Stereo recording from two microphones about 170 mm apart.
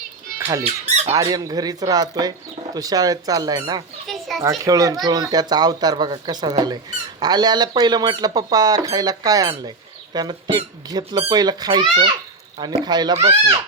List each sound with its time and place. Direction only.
0.6 s speech: 40° right (ahead or behind)
1.1 s speech: 20° right (ahead or behind)
4.0 s children playing: centre (ahead or behind)
4.4 s speech: 20° right (ahead or behind)
9.6 s a sound: 25° right (ahead or behind)
10.5 s speech: 25° right (ahead or behind)